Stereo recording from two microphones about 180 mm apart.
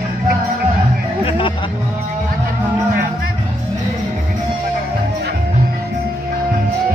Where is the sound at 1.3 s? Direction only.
30° left (ahead or behind).